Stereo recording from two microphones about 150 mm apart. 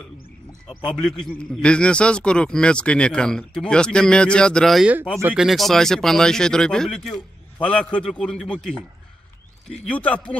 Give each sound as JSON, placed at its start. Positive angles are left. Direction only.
{"t": 0.7, "sound": "a man's voice", "side_deg": 35}
{"t": 1.2, "sound": "a man's voice", "side_deg": 5}